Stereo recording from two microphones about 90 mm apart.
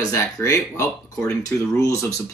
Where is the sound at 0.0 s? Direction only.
35° left (ahead or behind).